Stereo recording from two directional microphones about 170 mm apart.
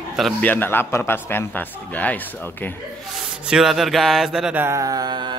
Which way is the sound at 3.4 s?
5° right (ahead or behind).